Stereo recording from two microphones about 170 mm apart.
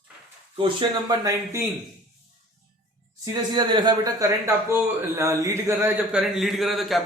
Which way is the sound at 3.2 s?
25° right (ahead or behind).